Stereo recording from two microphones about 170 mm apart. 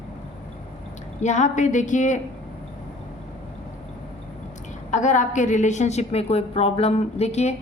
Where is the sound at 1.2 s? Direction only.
45° left (ahead or behind).